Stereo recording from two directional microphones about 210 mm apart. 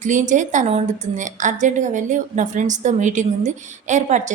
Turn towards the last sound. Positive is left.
turn(degrees=-35)  # may be behind; listen again after turning